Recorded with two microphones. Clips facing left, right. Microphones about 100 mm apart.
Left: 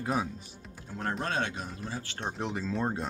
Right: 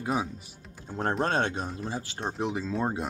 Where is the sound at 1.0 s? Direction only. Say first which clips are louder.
Right 5 dB; 35° right (ahead or behind).